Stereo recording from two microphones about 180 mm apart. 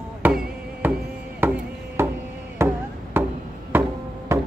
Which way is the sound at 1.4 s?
10° right (ahead or behind).